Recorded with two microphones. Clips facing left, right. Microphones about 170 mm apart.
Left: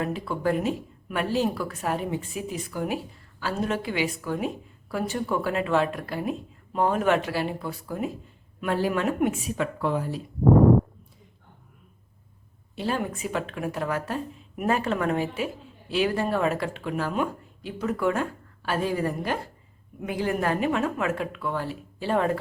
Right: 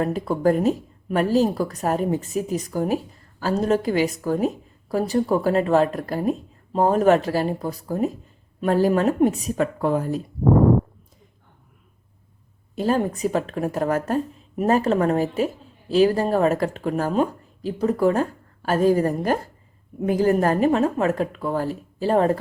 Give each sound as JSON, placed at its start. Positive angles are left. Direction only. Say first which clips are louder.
{"t": 0.0, "sound": "speech", "louder": "right 6 dB", "side_deg": -40}
{"t": 12.7, "sound": "speech", "louder": "right 7 dB", "side_deg": -40}